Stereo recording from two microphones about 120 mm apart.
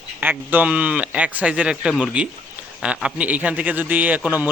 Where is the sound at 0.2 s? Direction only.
15° right (ahead or behind).